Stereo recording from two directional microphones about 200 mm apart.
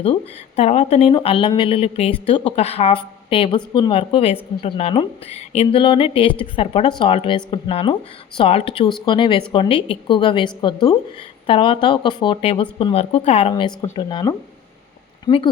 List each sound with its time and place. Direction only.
0.0 s speech: 30° left (ahead or behind)